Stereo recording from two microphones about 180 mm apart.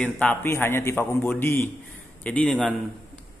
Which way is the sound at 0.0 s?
5° left (ahead or behind).